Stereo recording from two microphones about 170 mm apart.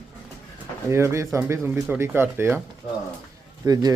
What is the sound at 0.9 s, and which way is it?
Speech, 15° right (ahead or behind).